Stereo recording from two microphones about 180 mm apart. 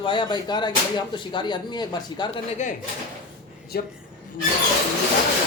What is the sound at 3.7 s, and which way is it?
Speech, 60° left (ahead or behind).